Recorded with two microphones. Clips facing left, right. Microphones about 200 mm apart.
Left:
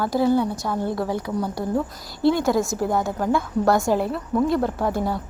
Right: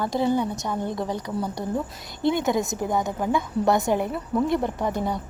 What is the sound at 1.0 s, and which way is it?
Speech, 10° left (ahead or behind).